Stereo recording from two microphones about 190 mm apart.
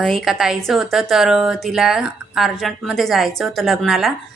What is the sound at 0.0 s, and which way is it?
Speech, centre (ahead or behind).